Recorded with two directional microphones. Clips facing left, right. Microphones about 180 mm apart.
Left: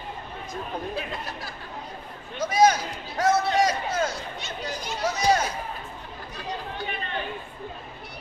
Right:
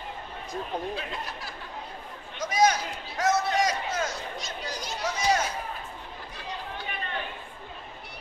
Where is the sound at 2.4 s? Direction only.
30° left (ahead or behind).